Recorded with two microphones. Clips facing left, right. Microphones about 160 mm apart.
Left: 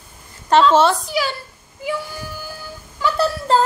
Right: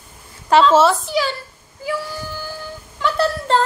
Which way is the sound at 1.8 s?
20° left (ahead or behind).